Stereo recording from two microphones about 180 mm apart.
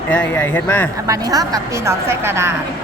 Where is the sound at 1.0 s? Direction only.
20° right (ahead or behind).